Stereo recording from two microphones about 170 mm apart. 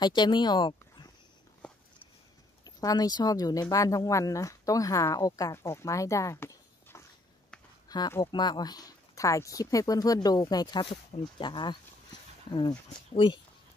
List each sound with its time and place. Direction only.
0.0 s speech: 25° left (ahead or behind)
2.6 s speech: 20° left (ahead or behind)